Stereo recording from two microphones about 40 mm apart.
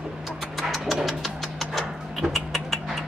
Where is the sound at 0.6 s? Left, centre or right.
Centre.